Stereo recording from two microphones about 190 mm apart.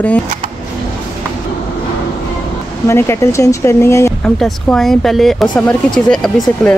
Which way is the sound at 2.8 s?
15° left (ahead or behind).